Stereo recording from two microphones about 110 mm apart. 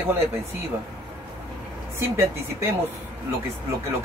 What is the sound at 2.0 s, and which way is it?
Speech, 20° right (ahead or behind).